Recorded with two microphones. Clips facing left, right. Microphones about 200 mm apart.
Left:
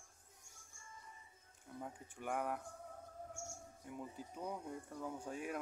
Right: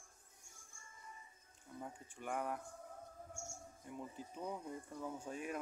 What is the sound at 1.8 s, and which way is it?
Speech, 10° left (ahead or behind).